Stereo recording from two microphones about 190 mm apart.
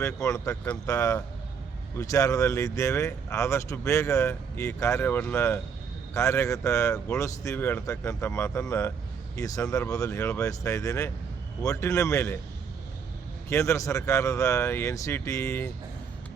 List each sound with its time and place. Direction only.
0.0 s speech: 15° left (ahead or behind)
13.5 s speech: 15° left (ahead or behind)